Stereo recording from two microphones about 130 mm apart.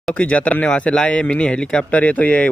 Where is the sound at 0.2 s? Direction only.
10° left (ahead or behind).